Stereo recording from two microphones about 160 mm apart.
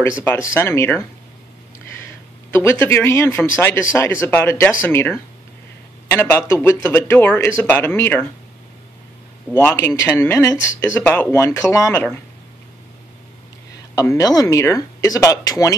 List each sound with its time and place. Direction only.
0.2 s speech: 15° left (ahead or behind)
9.6 s speech: 15° left (ahead or behind)
13.9 s speech: 20° left (ahead or behind)